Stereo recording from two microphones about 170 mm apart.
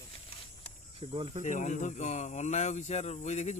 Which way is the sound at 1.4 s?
45° left (ahead or behind).